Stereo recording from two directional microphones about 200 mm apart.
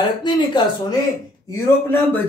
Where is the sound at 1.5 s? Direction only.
10° left (ahead or behind).